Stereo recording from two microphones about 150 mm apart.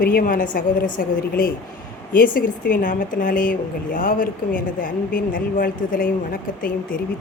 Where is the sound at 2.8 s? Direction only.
60° left (ahead or behind).